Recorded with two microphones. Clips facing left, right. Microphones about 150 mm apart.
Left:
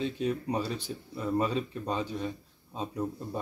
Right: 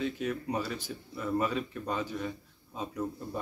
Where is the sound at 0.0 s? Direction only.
30° left (ahead or behind).